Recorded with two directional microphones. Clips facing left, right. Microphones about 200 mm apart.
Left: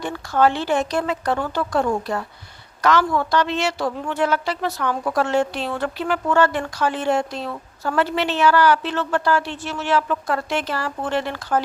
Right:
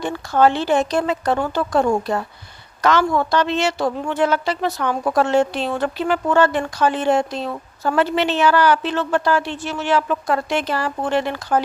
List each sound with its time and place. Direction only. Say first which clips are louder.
0.0 s a woman's voice: right 2 dB; 25° right (ahead or behind)